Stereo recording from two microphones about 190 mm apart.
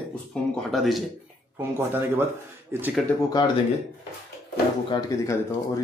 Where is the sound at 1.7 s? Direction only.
10° right (ahead or behind).